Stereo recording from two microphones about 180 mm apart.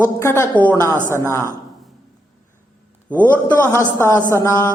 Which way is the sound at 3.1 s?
10° left (ahead or behind).